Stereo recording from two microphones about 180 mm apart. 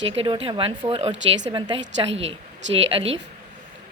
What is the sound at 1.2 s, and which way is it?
Speech, 90° right.